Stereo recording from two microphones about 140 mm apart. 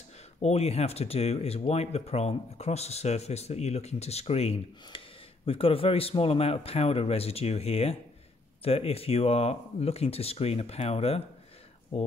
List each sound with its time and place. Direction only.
0.4 s speech: 50° left (ahead or behind)